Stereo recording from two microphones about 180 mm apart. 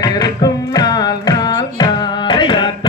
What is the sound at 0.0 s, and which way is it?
Carnatic music, 20° left (ahead or behind).